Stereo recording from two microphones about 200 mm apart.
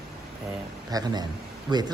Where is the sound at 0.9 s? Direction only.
20° right (ahead or behind).